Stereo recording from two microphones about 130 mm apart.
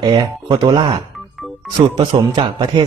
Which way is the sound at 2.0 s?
35° right (ahead or behind).